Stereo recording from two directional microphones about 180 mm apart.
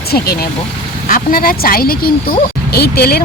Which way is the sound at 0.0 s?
60° left (ahead or behind).